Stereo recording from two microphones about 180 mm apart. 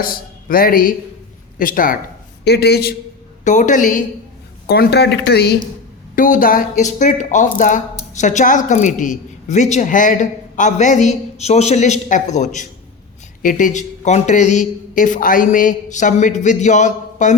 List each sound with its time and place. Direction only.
0.0 s a man's voice: 55° left (ahead or behind)
2.4 s speech: 65° left (ahead or behind)
3.4 s a woman's voice: 45° left (ahead or behind)
4.7 s speech: 65° left (ahead or behind)
6.1 s a woman's voice: 50° left (ahead or behind)